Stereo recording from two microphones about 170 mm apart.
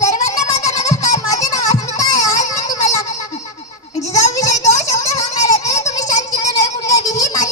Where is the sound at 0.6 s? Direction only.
20° left (ahead or behind).